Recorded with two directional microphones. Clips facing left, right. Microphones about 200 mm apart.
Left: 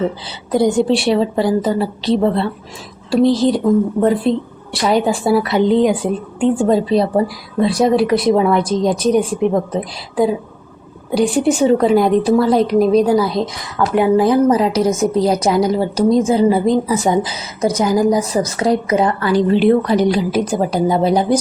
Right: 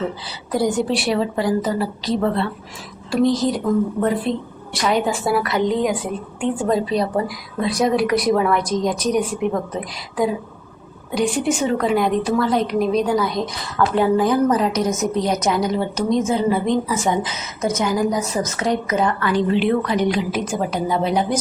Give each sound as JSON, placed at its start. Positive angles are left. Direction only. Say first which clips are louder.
{"t": 0.5, "sound": "a woman's voice", "louder": "left 6 dB", "side_deg": 25}
{"t": 13.7, "sound": "speech", "louder": "left 3 dB", "side_deg": 10}
{"t": 14.2, "sound": "a woman's voice", "louder": "left 4 dB", "side_deg": 25}